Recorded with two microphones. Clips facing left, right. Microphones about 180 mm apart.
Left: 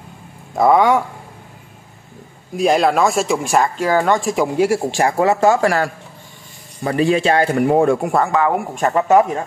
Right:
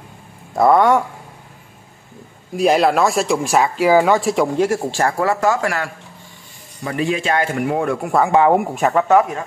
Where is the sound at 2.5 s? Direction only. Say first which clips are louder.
Even; centre (ahead or behind); by 8.1 s 30° left (ahead or behind).